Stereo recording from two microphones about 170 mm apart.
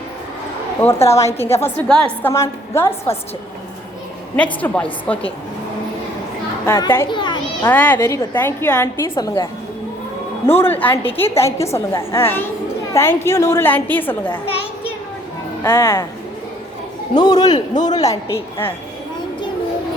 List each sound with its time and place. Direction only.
0.8 s a woman's voice: 15° left (ahead or behind)
2.3 s a woman's voice: 15° left (ahead or behind)
4.6 s a woman's voice: 5° left (ahead or behind)
6.7 s a woman's voice: 20° left (ahead or behind)
7.1 s children playing: 25° left (ahead or behind)
7.6 s a woman's voice: 10° left (ahead or behind)
14.3 s a sound: 35° left (ahead or behind)
15.6 s a woman's voice: 15° left (ahead or behind)
17.2 s a man's voice: 25° left (ahead or behind)